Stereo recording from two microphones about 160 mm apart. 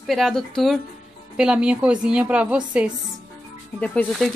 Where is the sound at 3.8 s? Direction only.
10° left (ahead or behind).